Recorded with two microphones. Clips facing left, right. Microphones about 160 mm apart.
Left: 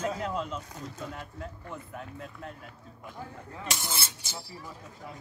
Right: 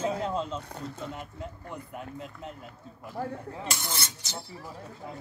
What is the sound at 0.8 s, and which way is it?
Zipper, 25° right (ahead or behind).